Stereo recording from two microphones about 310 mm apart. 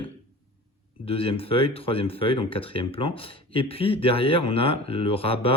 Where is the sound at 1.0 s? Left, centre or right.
Centre.